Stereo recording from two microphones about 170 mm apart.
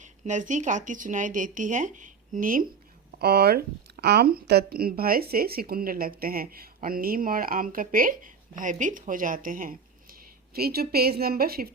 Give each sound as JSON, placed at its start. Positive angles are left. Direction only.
{"t": 0.0, "sound": "speech", "side_deg": -45}
{"t": 3.2, "sound": "speech", "side_deg": -70}
{"t": 10.5, "sound": "speech", "side_deg": -65}